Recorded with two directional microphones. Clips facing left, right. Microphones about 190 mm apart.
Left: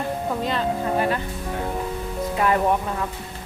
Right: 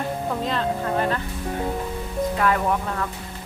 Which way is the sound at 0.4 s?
5° left (ahead or behind).